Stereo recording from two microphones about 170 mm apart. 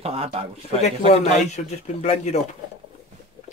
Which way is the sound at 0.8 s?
40° left (ahead or behind).